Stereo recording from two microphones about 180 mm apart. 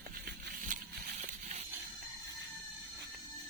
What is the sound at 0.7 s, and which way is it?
Slosh, 45° right (ahead or behind).